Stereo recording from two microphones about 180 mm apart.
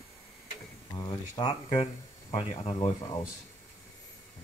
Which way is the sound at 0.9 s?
20° left (ahead or behind).